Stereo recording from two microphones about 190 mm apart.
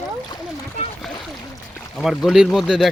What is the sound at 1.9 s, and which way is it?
Speech, centre (ahead or behind).